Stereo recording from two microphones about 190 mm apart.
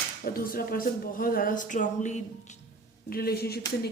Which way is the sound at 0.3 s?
50° left (ahead or behind).